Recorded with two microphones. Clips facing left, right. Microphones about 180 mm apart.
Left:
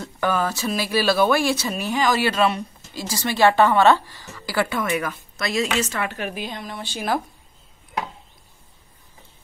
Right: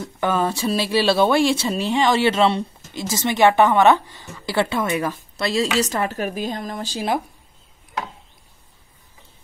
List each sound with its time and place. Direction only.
0.0 s a woman's voice: 20° right (ahead or behind); by 7.1 s 40° right (ahead or behind)